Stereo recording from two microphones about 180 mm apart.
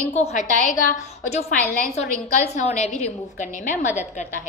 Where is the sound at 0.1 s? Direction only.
40° left (ahead or behind).